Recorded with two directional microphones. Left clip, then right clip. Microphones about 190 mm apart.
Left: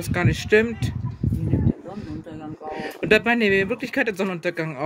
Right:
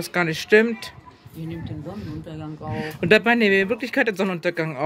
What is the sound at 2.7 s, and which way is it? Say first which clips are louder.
Speech: right 1 dB; 5° right (ahead or behind).